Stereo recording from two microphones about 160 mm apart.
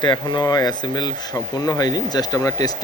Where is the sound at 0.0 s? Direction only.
30° left (ahead or behind).